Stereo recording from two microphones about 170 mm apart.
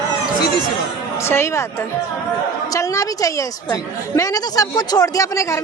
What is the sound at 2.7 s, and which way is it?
A woman's voice, 20° left (ahead or behind).